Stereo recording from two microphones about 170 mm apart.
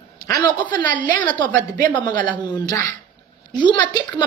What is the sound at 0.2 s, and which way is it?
Speech, 25° left (ahead or behind).